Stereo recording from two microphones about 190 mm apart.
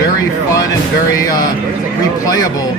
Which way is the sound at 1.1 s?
20° left (ahead or behind).